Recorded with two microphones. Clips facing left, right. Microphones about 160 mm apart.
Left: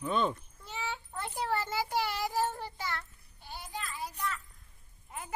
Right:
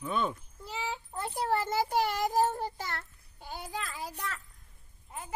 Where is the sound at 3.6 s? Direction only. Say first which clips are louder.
Right 1 dB; 90° right.